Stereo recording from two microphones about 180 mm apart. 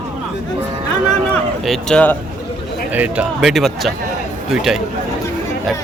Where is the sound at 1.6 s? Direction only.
Centre (ahead or behind).